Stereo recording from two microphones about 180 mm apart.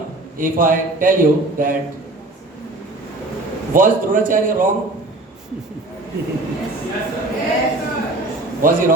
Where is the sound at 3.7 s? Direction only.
50° right (ahead or behind).